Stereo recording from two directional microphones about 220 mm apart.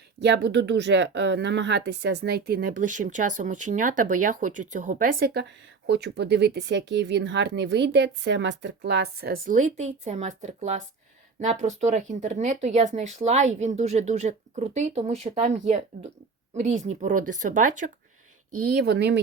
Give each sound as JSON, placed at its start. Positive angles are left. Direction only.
{"t": 0.2, "sound": "speech", "side_deg": -50}
{"t": 18.7, "sound": "speech", "side_deg": -50}